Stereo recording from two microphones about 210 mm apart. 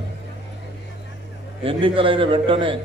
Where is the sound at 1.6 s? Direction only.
25° right (ahead or behind).